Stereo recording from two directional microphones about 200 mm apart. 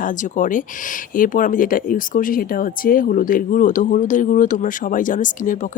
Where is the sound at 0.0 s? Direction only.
40° left (ahead or behind).